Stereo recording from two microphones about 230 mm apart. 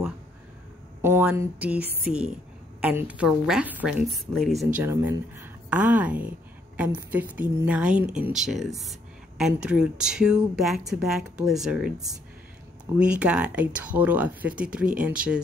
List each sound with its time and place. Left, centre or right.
1.0 s speech: centre
4.7 s a woman's voice: centre
13.0 s speech: centre